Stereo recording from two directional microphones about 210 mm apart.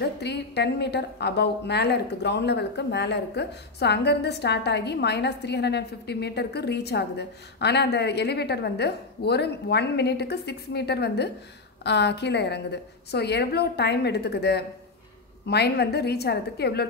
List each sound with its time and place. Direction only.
0.0 s a woman's voice: 55° left (ahead or behind)